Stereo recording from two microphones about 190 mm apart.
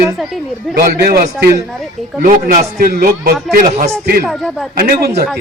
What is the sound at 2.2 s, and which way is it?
A man's voice, 45° right (ahead or behind).